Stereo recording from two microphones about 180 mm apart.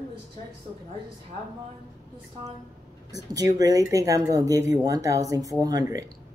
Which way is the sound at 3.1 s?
20° right (ahead or behind).